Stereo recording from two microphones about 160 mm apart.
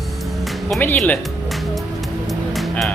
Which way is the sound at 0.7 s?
10° left (ahead or behind).